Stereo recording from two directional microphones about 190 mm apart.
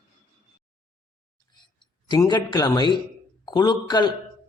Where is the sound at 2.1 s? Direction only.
20° left (ahead or behind).